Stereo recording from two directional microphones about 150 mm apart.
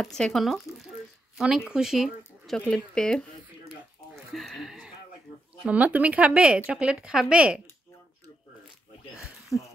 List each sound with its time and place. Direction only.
0.0 s speech: 5° left (ahead or behind)
1.7 s a sound: 5° right (ahead or behind)
5.7 s speech: 10° right (ahead or behind)
9.5 s speech: centre (ahead or behind)